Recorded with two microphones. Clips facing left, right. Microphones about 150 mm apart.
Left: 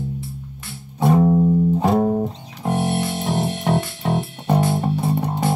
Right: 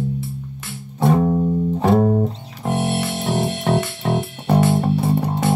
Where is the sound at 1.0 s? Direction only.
10° left (ahead or behind).